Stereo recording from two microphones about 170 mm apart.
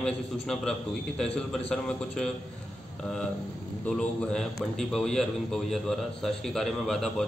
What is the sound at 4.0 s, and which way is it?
A man's voice, 5° left (ahead or behind).